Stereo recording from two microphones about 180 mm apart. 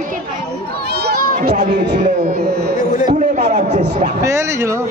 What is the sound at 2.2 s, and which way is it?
Speech, 60° right (ahead or behind).